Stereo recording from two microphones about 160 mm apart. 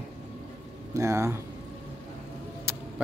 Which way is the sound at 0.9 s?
20° right (ahead or behind).